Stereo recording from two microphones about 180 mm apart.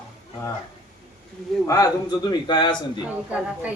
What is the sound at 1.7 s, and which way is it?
A man's voice, 20° left (ahead or behind).